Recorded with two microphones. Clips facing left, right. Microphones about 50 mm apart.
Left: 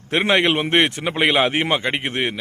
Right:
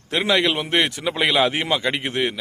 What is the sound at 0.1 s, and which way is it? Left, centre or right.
Speech, left.